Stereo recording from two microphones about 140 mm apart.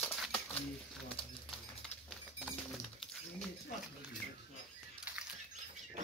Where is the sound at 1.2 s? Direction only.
40° left (ahead or behind).